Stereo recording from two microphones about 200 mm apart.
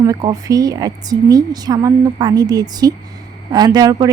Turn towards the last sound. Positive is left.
turn(degrees=-20)  # may be behind; listen again after turning